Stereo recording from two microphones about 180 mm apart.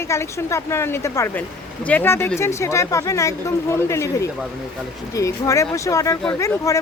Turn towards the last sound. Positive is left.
turn(degrees=15)  # may be behind; listen again after turning